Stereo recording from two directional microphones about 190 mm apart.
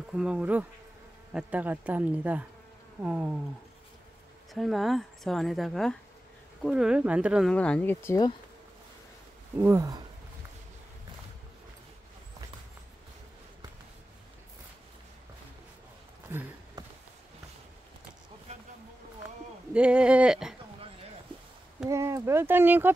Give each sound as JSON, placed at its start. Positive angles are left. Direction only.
{"t": 0.1, "sound": "speech", "side_deg": -5}
{"t": 4.6, "sound": "speech", "side_deg": 0}
{"t": 7.5, "sound": "speech", "side_deg": 5}
{"t": 9.6, "sound": "speech", "side_deg": -15}
{"t": 16.3, "sound": "a sound", "side_deg": -15}
{"t": 19.7, "sound": "speech", "side_deg": -5}
{"t": 21.8, "sound": "speech", "side_deg": -15}